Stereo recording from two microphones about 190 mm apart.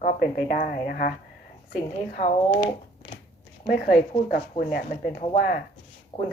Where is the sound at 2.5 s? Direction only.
25° left (ahead or behind).